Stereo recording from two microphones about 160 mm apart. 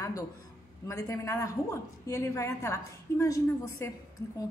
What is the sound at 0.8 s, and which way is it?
A woman's voice, 20° left (ahead or behind).